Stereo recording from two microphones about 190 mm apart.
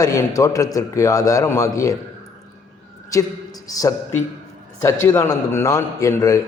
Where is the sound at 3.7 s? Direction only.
20° left (ahead or behind).